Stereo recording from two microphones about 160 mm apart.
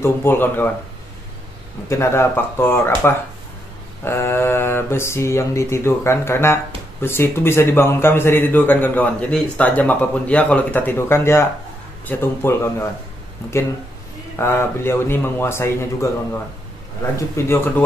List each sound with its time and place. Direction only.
0.0 s speech: 15° left (ahead or behind)
1.9 s speech: 15° left (ahead or behind)
14.4 s speech: 15° left (ahead or behind)
17.4 s speech: 15° left (ahead or behind)